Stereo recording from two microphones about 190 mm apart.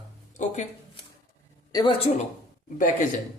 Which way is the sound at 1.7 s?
20° left (ahead or behind).